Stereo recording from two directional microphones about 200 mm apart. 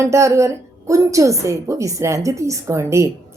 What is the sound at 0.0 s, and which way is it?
A woman's voice, 15° right (ahead or behind).